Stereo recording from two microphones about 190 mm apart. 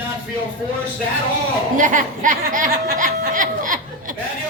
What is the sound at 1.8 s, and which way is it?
Speech, 45° right (ahead or behind).